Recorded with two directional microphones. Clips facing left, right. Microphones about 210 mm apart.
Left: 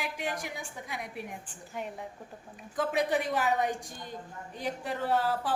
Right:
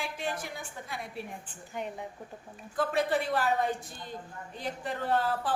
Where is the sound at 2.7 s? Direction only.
15° left (ahead or behind).